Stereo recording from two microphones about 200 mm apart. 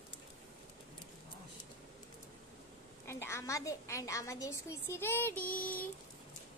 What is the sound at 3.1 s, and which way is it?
A woman's voice, 15° left (ahead or behind).